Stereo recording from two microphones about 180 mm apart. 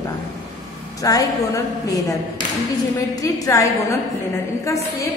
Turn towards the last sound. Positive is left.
turn(degrees=15)  # may be behind; listen again after turning